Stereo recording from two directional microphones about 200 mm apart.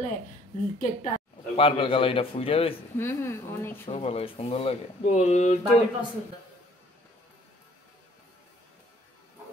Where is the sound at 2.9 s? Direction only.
10° left (ahead or behind).